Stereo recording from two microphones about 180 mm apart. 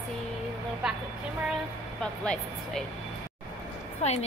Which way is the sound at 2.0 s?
5° left (ahead or behind).